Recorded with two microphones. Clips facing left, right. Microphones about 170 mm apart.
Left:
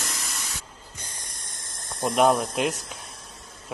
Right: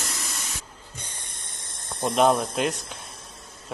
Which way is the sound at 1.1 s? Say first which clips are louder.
Even; 40° left (ahead or behind).